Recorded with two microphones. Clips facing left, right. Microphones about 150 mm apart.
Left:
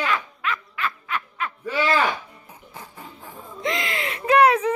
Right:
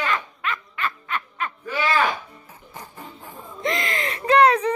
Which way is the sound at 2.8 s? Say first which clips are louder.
Right 2 dB; centre (ahead or behind).